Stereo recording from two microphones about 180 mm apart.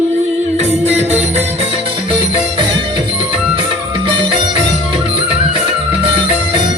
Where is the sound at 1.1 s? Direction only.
35° right (ahead or behind).